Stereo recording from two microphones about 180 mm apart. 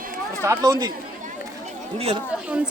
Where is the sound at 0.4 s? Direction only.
15° right (ahead or behind).